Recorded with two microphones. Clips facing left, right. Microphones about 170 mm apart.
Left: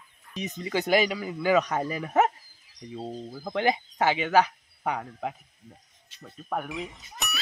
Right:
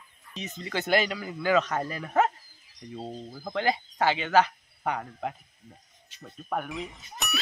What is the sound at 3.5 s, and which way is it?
Speech, 15° left (ahead or behind).